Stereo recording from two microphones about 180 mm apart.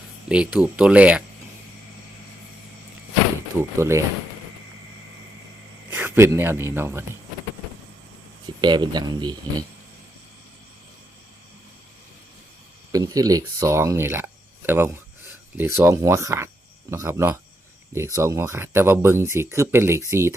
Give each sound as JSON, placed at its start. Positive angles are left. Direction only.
{"t": 0.3, "sound": "speech", "side_deg": -5}
{"t": 3.6, "sound": "speech", "side_deg": -15}
{"t": 5.9, "sound": "a man's voice", "side_deg": -10}
{"t": 8.6, "sound": "speech", "side_deg": -25}
{"t": 12.9, "sound": "speech", "side_deg": -20}